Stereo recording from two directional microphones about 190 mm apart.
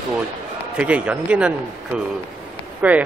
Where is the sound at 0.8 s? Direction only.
5° right (ahead or behind).